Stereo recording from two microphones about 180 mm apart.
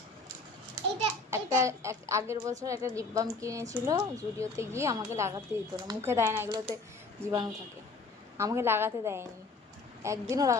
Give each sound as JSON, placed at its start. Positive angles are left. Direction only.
{"t": 1.3, "sound": "speech", "side_deg": -15}